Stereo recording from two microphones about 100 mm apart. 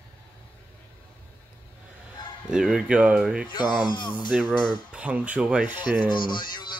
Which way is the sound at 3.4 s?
50° left (ahead or behind).